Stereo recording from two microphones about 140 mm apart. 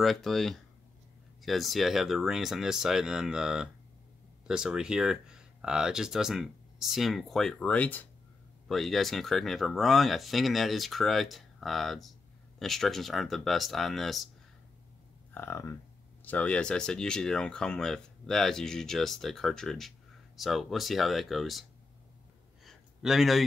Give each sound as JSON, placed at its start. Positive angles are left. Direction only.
{"t": 0.0, "sound": "speech", "side_deg": 0}
{"t": 15.3, "sound": "speech", "side_deg": 20}
{"t": 22.7, "sound": "a sound", "side_deg": 0}